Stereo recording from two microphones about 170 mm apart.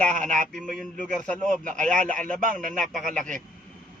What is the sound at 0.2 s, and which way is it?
A man's voice, 50° right (ahead or behind).